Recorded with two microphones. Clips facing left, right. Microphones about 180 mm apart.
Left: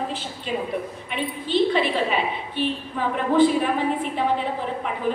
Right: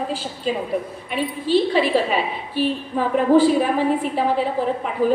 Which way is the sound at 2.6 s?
35° right (ahead or behind).